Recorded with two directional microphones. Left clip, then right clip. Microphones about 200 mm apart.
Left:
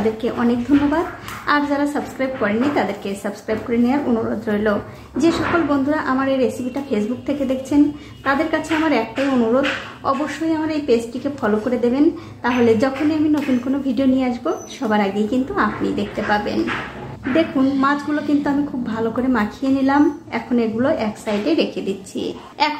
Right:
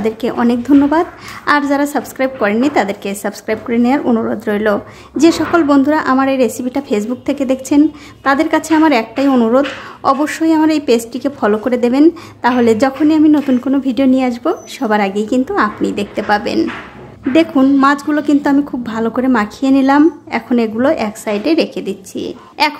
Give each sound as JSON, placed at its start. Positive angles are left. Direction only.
{"t": 0.2, "sound": "a woman's voice", "side_deg": -40}